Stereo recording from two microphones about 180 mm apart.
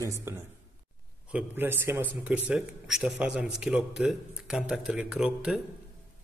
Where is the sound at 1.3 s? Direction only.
10° right (ahead or behind).